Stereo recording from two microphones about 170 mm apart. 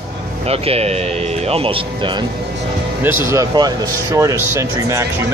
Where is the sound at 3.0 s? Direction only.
15° right (ahead or behind).